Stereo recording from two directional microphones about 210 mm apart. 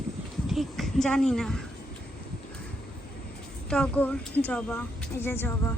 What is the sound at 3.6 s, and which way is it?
A woman's voice, 5° left (ahead or behind).